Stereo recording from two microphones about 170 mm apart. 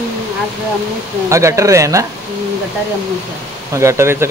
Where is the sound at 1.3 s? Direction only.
15° right (ahead or behind).